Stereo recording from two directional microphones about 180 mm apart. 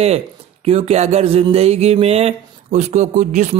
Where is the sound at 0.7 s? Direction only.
35° right (ahead or behind).